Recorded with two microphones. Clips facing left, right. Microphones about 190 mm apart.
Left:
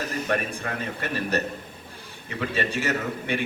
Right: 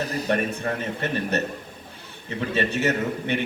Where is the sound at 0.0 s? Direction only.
35° right (ahead or behind).